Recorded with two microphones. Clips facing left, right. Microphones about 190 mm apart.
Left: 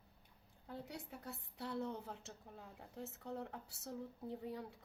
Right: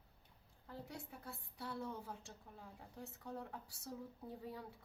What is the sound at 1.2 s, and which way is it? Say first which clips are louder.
A woman's voice: left 2 dB; 20° left (ahead or behind).